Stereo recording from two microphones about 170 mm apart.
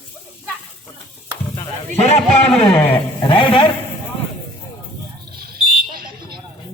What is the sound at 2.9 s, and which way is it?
Speech, 30° left (ahead or behind).